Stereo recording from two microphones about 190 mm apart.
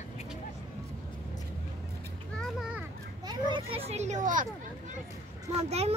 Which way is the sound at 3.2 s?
25° right (ahead or behind).